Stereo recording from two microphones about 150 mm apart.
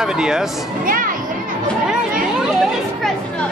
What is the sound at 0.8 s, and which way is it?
Speech, 70° right (ahead or behind).